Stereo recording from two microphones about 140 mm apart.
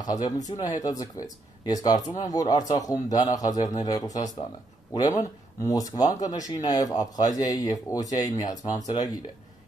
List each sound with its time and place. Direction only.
0.0 s speech: 30° left (ahead or behind)